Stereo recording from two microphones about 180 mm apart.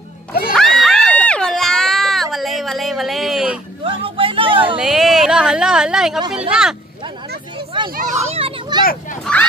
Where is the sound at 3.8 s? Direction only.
30° right (ahead or behind).